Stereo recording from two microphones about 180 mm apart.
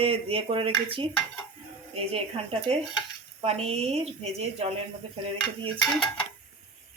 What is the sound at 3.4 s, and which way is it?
Speech, 35° right (ahead or behind).